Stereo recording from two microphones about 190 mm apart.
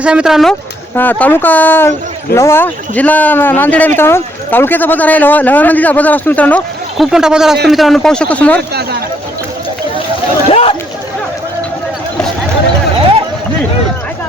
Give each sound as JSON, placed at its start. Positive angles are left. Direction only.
{"t": 0.0, "sound": "speech", "side_deg": -5}
{"t": 0.9, "sound": "speech", "side_deg": 10}
{"t": 7.0, "sound": "speech", "side_deg": -5}
{"t": 10.5, "sound": "a sound", "side_deg": 30}